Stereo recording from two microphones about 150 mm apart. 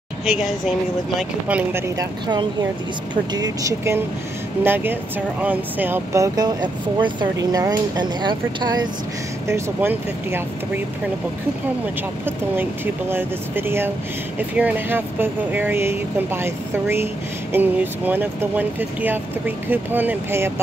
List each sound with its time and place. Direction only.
0.2 s a woman's voice: centre (ahead or behind)
3.3 s speech: 25° right (ahead or behind)
9.5 s speech: 15° right (ahead or behind)
12.3 s speech: 15° right (ahead or behind)